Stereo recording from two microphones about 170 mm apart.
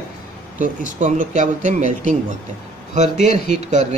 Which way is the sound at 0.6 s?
45° right (ahead or behind).